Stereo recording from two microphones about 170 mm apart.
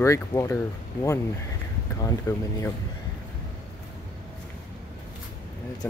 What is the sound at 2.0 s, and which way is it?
Speech, 20° left (ahead or behind).